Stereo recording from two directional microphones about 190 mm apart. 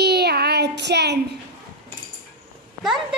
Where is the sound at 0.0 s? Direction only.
60° right (ahead or behind).